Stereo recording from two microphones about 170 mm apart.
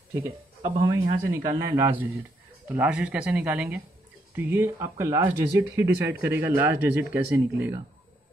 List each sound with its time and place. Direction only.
0.1 s speech: 15° right (ahead or behind)